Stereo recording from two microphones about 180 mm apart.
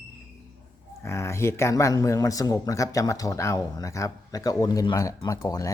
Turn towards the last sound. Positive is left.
turn(degrees=20)  # may be behind; listen again after turning